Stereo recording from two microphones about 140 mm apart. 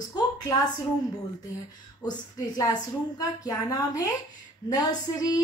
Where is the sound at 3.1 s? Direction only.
25° left (ahead or behind).